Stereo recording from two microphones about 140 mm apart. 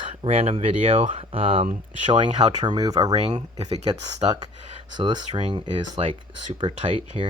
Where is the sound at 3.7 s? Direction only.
25° right (ahead or behind).